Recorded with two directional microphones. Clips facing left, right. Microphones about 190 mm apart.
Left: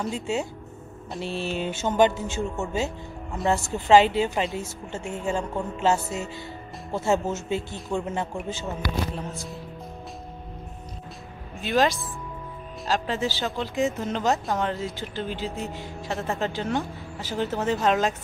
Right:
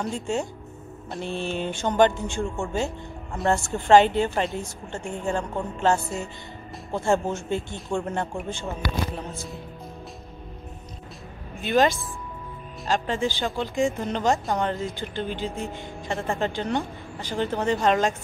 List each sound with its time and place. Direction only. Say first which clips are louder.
0.0 s speech: even; 5° left (ahead or behind)
11.6 s speech: right 2 dB; centre (ahead or behind)